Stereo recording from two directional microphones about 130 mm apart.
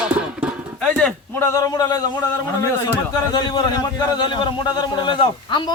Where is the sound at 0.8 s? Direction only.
5° left (ahead or behind).